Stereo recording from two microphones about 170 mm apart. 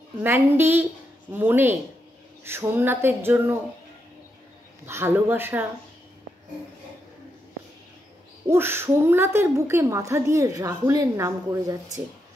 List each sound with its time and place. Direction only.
0.2 s a woman's voice: 15° right (ahead or behind)
4.8 s a woman's voice: 15° right (ahead or behind)
8.5 s a woman's voice: 15° right (ahead or behind)